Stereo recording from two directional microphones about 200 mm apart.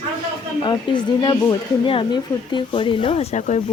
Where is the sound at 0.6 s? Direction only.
20° left (ahead or behind).